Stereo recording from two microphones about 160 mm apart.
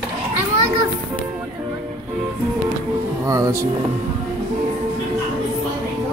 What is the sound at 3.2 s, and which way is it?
Music, 20° right (ahead or behind).